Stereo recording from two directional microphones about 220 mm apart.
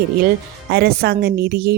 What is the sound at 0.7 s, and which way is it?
Speech, 45° right (ahead or behind).